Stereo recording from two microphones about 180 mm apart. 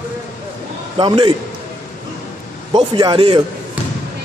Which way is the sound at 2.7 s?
25° right (ahead or behind).